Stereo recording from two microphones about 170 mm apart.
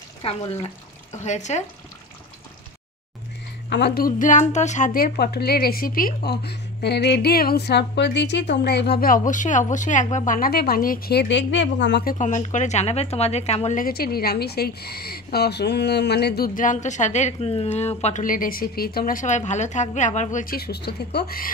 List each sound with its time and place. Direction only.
0.2 s speech: 35° left (ahead or behind)
3.7 s a woman's voice: 75° left (ahead or behind); by 13.8 s 40° left (ahead or behind)
13.8 s a woman's voice: 65° left (ahead or behind)